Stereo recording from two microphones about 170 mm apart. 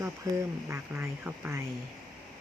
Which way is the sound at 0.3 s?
15° right (ahead or behind).